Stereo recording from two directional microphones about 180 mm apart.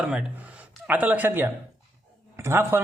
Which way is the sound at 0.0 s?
5° right (ahead or behind).